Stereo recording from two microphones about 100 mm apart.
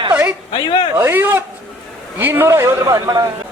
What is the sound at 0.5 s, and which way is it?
Speech, 50° left (ahead or behind).